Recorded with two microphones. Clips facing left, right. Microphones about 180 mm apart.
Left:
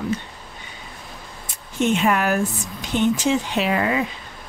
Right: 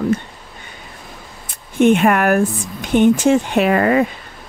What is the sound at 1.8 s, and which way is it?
Speech, 55° right (ahead or behind).